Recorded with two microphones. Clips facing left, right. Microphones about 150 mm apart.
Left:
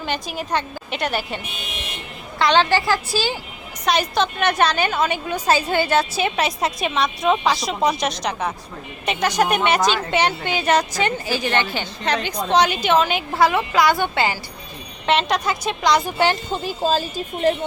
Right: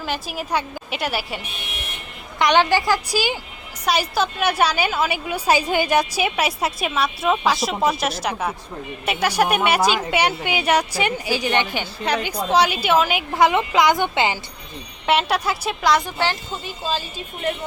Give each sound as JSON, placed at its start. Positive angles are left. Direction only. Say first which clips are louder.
{"t": 0.0, "sound": "a woman's voice", "louder": "left 1 dB", "side_deg": -5}
{"t": 2.4, "sound": "a woman's voice", "louder": "even", "side_deg": -15}
{"t": 15.0, "sound": "a woman's voice", "louder": "even", "side_deg": -10}
{"t": 16.0, "sound": "speech", "louder": "left 4 dB", "side_deg": 15}
{"t": 16.5, "sound": "speech", "louder": "left 6 dB", "side_deg": 40}